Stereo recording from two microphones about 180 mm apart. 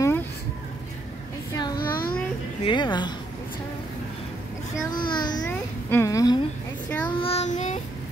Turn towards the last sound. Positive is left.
turn(degrees=40)  # may be behind; listen again after turning